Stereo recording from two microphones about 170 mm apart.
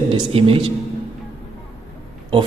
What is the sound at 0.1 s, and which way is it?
Speech, 35° right (ahead or behind).